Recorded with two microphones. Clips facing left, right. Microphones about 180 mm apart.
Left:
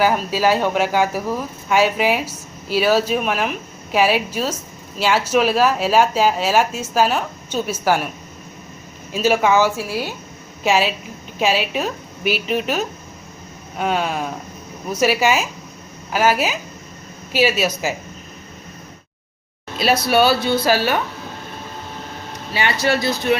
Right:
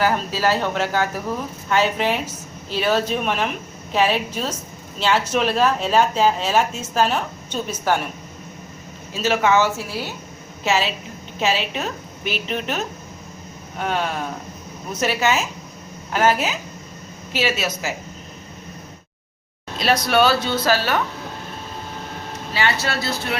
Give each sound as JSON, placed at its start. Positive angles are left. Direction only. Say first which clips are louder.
{"t": 0.0, "sound": "speech", "louder": "left 3 dB", "side_deg": 10}
{"t": 9.2, "sound": "a woman's voice", "louder": "left 2 dB", "side_deg": 10}
{"t": 19.8, "sound": "speech", "louder": "left 2 dB", "side_deg": 5}
{"t": 22.5, "sound": "speech", "louder": "left 4 dB", "side_deg": 15}